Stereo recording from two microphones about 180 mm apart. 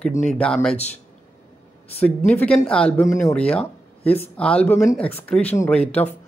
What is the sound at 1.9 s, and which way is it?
Speech, 10° left (ahead or behind).